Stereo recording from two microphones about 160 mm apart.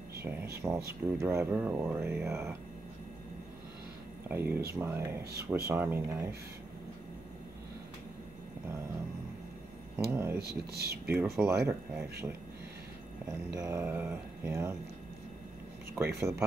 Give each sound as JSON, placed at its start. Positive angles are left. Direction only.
{"t": 0.6, "sound": "speech", "side_deg": -15}
{"t": 4.3, "sound": "speech", "side_deg": -15}
{"t": 10.1, "sound": "speech", "side_deg": -15}
{"t": 10.7, "sound": "speech", "side_deg": -80}
{"t": 11.1, "sound": "speech", "side_deg": -15}
{"t": 13.5, "sound": "speech", "side_deg": -20}
{"t": 16.2, "sound": "speech", "side_deg": -15}